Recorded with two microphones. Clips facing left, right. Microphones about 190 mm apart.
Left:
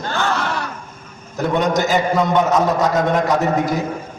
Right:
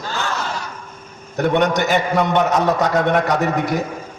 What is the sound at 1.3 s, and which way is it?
A man's voice, 65° right (ahead or behind).